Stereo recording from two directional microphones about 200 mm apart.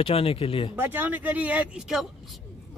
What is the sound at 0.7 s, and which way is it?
Speech, 10° right (ahead or behind).